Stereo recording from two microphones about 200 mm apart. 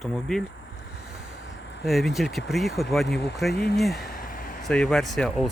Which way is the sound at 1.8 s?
Centre (ahead or behind).